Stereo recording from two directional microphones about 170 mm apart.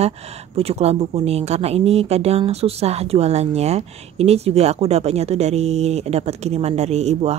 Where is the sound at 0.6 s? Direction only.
35° right (ahead or behind).